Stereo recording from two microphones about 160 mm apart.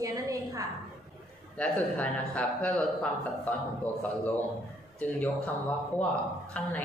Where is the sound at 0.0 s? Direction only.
20° right (ahead or behind).